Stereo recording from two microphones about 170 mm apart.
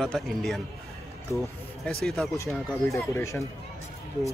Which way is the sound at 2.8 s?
15° left (ahead or behind).